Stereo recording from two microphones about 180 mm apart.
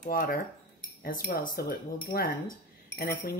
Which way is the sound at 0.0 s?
55° left (ahead or behind).